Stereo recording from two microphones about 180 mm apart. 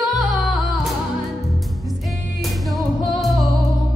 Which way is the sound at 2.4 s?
Centre (ahead or behind).